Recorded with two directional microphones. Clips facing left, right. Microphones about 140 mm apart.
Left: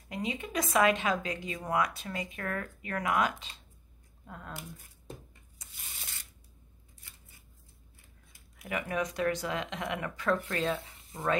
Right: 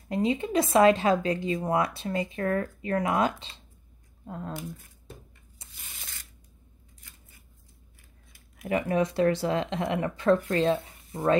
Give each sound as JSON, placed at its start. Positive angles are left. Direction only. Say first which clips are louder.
{"t": 0.1, "sound": "speech", "louder": "right 9 dB", "side_deg": -30}
{"t": 5.6, "sound": "tearing", "louder": "right 2 dB", "side_deg": -30}
{"t": 8.6, "sound": "speech", "louder": "right 7 dB", "side_deg": -35}